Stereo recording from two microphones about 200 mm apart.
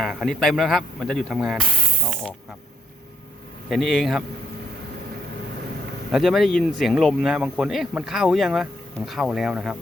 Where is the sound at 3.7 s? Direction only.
Centre (ahead or behind).